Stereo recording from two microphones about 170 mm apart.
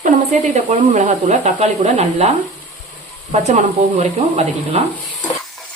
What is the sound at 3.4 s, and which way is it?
Speech, 45° right (ahead or behind).